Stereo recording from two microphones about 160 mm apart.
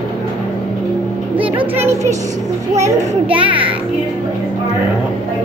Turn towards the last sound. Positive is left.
turn(degrees=-10)  # may be behind; listen again after turning